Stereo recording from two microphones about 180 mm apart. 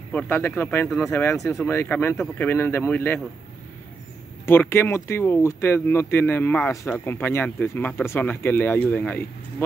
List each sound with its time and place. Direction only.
0.1 s speech: 10° left (ahead or behind)
4.5 s speech: 15° left (ahead or behind)